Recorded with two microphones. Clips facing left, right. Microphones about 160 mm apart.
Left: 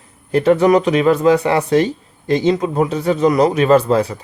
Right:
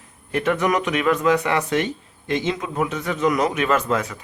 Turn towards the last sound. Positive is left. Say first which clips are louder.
# left 8 dB
turn(degrees=30)  # may be behind; listen again after turning